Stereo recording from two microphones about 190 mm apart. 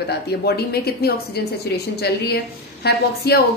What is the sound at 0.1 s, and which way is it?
A woman's voice, 60° left (ahead or behind).